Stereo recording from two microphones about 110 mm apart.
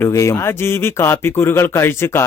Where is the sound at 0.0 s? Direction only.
25° left (ahead or behind).